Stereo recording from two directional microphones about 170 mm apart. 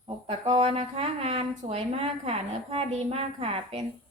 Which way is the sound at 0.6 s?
35° right (ahead or behind).